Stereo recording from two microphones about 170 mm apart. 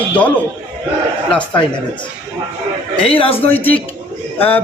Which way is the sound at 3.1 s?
35° left (ahead or behind).